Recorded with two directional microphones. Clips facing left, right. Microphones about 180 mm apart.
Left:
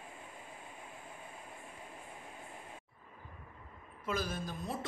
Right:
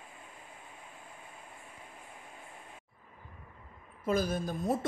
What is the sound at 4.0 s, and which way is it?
Speech, 40° right (ahead or behind).